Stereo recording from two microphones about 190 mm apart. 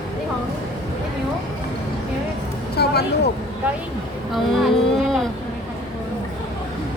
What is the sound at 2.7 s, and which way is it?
Speech, 60° left (ahead or behind).